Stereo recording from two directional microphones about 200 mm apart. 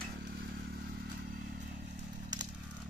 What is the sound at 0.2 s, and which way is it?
Vehicle, 50° right (ahead or behind).